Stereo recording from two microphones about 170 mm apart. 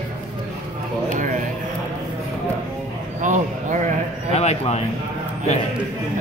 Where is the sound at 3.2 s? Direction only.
45° right (ahead or behind).